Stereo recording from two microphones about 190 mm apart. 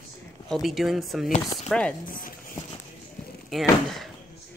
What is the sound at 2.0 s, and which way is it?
Speech, 45° left (ahead or behind).